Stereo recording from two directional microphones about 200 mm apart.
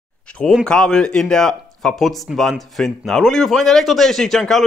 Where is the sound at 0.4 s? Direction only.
5° left (ahead or behind).